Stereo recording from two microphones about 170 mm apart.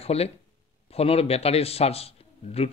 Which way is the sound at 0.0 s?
35° left (ahead or behind).